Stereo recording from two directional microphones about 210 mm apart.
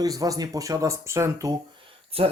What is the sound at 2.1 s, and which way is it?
Speech, 25° right (ahead or behind).